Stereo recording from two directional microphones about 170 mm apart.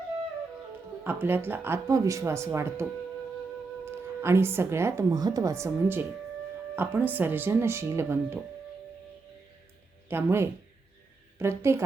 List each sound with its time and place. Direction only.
1.0 s speech: 10° right (ahead or behind)
3.9 s speech: 15° right (ahead or behind)
10.1 s a woman's voice: 15° right (ahead or behind)